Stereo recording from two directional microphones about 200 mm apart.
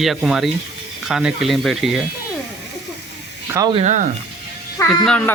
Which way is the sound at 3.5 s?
15° right (ahead or behind).